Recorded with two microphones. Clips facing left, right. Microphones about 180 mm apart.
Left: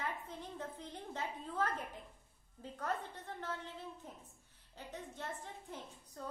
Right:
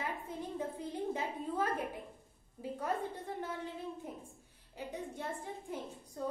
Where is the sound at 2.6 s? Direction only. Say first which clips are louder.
Right 4 dB; 10° right (ahead or behind).